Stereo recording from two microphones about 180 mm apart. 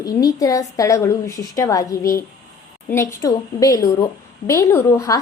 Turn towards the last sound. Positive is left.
turn(degrees=15)  # may be behind; listen again after turning